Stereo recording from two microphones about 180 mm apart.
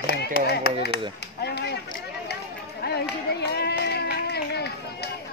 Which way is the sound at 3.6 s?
65° left (ahead or behind).